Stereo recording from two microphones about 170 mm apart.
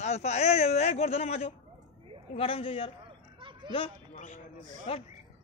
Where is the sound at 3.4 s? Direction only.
30° right (ahead or behind).